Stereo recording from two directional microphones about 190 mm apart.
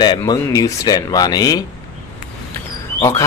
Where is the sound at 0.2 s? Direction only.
20° left (ahead or behind).